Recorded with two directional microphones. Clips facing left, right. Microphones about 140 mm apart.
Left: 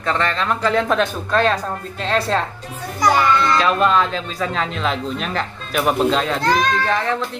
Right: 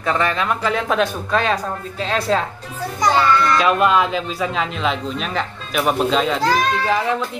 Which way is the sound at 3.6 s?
5° right (ahead or behind).